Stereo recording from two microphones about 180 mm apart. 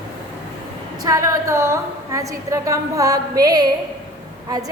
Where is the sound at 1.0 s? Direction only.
15° right (ahead or behind).